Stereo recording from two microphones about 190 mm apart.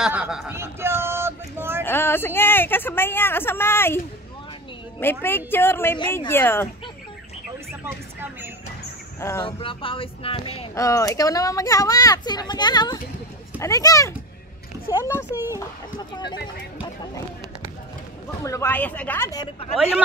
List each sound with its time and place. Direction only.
0.0 s a man's voice: 5° right (ahead or behind)
1.9 s speech: 10° left (ahead or behind)
5.0 s speech: 10° left (ahead or behind)
7.8 s speech: 10° right (ahead or behind)
9.4 s speech: 25° left (ahead or behind)
10.7 s speech: 15° left (ahead or behind)
15.3 s speech: 10° right (ahead or behind)
16.1 s speech: 25° left (ahead or behind)
18.4 s speech: 15° left (ahead or behind)